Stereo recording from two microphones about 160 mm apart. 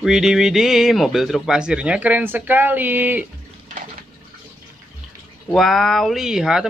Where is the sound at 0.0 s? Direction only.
5° right (ahead or behind).